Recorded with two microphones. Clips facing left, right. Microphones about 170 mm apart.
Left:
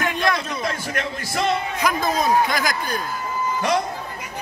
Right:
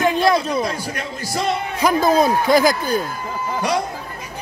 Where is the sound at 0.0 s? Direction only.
30° right (ahead or behind).